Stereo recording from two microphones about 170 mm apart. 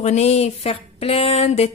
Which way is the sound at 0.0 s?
40° left (ahead or behind).